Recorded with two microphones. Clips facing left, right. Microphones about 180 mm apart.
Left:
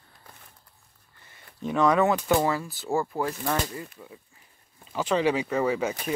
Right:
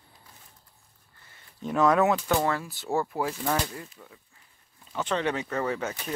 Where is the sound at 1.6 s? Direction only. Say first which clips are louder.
Even; centre (ahead or behind).